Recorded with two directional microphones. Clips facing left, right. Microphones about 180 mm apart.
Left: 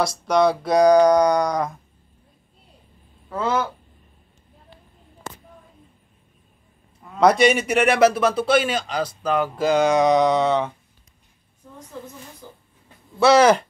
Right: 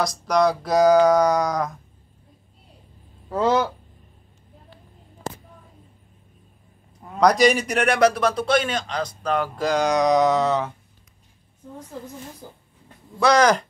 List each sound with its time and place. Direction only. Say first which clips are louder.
0.0 s a man's voice: left 1 dB; centre (ahead or behind)
7.2 s a man's voice: left 1 dB; 5° left (ahead or behind)
12.4 s speech: right 1 dB; 40° right (ahead or behind)
13.2 s a man's voice: left 3 dB; 5° left (ahead or behind)